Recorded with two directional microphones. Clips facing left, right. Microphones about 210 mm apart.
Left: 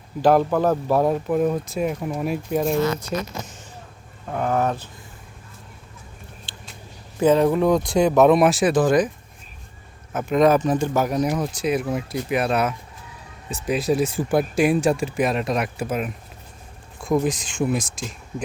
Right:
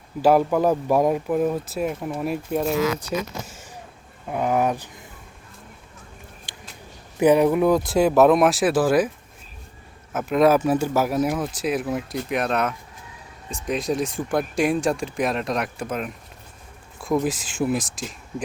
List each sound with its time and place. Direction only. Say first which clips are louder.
0.2 s speech: even; 10° right (ahead or behind)
2.7 s speech: left 1 dB; 90° right
3.1 s speech: even; 5° right (ahead or behind)
6.5 s a sound: even; 15° right (ahead or behind)
7.2 s speech: even; 15° right (ahead or behind)
10.1 s speech: even; 5° right (ahead or behind)
17.2 s speech: left 1 dB; 5° right (ahead or behind)